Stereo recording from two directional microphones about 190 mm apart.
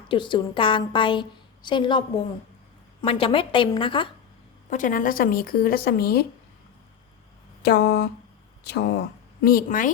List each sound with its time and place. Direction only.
0.1 s a woman's voice: 25° left (ahead or behind)
4.7 s speech: 45° left (ahead or behind)
7.6 s a sound: 60° left (ahead or behind)
9.4 s speech: 50° left (ahead or behind)